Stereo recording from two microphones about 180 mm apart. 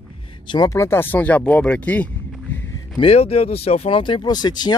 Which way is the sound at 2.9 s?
35° left (ahead or behind).